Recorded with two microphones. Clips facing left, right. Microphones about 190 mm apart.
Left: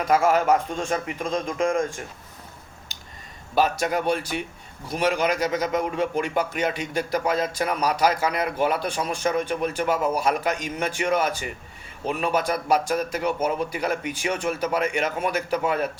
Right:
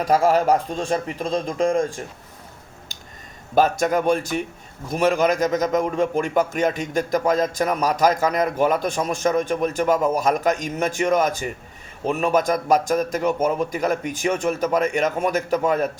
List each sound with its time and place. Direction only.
0.0 s speech: 35° right (ahead or behind)
3.5 s a man's voice: 45° right (ahead or behind)